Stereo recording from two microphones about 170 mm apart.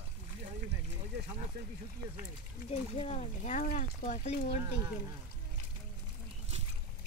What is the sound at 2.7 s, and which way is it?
Speech, 40° left (ahead or behind).